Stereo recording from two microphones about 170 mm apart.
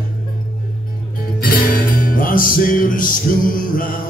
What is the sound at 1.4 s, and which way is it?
Music, 60° left (ahead or behind).